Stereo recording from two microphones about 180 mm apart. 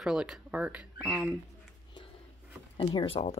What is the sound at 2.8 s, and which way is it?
Speech, 30° left (ahead or behind).